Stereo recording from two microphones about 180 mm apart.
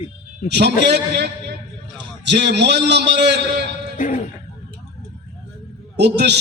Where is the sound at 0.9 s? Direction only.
65° right (ahead or behind).